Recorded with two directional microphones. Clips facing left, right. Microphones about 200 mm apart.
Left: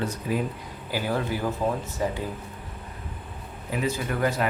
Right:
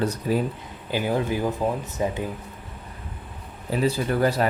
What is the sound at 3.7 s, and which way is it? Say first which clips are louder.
Speech: right 5 dB; 35° right (ahead or behind).